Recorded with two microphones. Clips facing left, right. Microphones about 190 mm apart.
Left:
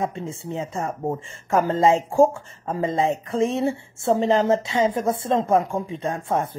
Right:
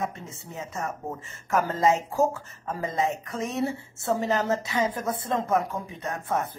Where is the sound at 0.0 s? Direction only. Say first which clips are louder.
Left 6 dB; 30° left (ahead or behind).